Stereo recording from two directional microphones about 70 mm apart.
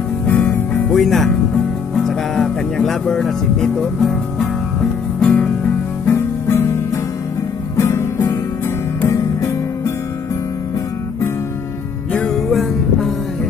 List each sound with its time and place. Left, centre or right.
0.3 s music: left
0.8 s speech: centre
5.2 s music: centre
6.0 s music: left
12.3 s music: centre